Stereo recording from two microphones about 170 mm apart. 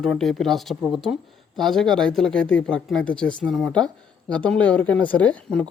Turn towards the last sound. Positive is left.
turn(degrees=10)  # may be behind; listen again after turning